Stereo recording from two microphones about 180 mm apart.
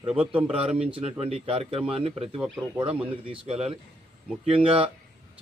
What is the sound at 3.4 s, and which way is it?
A man's voice, 35° right (ahead or behind).